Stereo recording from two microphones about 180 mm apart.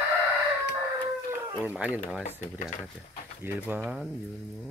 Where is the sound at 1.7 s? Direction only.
10° right (ahead or behind).